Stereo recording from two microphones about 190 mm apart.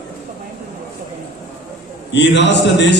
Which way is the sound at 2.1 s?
65° left (ahead or behind).